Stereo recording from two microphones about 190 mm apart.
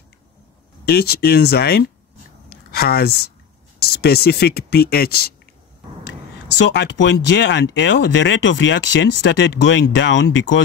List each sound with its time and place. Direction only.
0.8 s speech: 55° left (ahead or behind)
2.5 s a sound: 55° left (ahead or behind)
3.8 s speech: 55° left (ahead or behind)
6.6 s speech: 65° left (ahead or behind)